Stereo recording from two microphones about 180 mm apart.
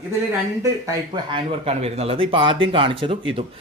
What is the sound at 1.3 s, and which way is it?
A woman's voice, 35° right (ahead or behind).